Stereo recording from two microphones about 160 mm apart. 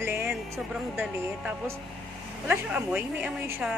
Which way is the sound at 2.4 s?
10° right (ahead or behind).